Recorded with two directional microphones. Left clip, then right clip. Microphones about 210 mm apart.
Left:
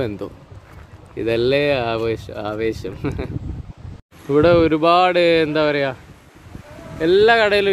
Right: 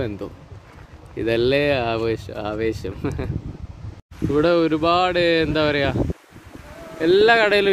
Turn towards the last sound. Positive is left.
turn(degrees=-10)  # may be behind; listen again after turning